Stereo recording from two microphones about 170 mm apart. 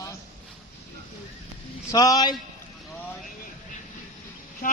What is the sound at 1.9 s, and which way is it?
Speech, 20° left (ahead or behind).